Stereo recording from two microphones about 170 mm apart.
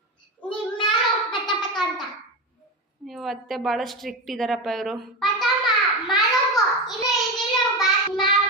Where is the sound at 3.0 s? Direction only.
Centre (ahead or behind).